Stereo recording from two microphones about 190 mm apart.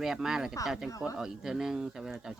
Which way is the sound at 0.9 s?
15° left (ahead or behind).